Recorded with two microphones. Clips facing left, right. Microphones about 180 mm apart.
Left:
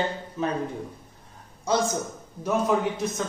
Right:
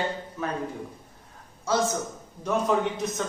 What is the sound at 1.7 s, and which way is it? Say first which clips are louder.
Speech: left 1 dB; 15° left (ahead or behind).